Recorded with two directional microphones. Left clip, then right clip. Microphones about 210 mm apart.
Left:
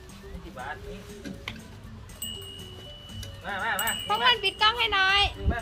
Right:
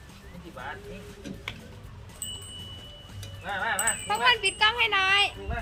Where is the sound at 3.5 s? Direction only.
15° left (ahead or behind).